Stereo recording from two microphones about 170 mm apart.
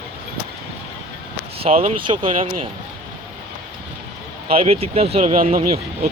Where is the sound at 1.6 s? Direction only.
40° right (ahead or behind).